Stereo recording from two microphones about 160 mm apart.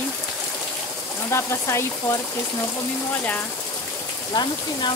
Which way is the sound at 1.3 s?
15° left (ahead or behind).